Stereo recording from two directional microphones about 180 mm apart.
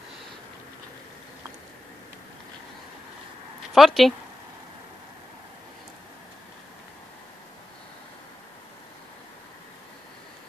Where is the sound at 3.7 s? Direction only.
Centre (ahead or behind).